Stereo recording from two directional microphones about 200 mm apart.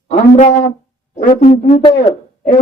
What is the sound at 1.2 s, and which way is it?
Speech, 35° left (ahead or behind).